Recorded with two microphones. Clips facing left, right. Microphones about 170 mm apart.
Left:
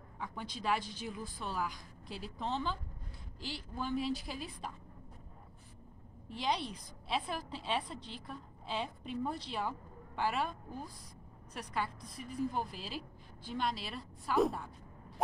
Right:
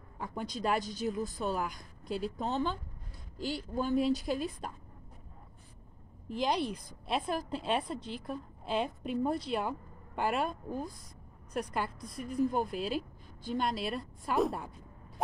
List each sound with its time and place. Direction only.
0.2 s a woman's voice: 45° right (ahead or behind)
6.2 s a woman's voice: 45° right (ahead or behind)